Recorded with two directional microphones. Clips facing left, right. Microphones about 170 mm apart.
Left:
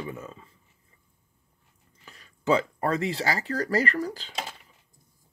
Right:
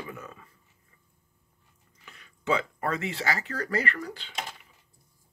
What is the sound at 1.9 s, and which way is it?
Speech, 35° left (ahead or behind).